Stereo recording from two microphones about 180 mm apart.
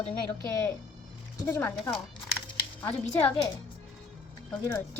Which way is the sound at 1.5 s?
10° left (ahead or behind).